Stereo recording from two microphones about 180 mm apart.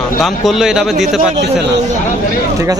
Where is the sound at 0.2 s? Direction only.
Centre (ahead or behind).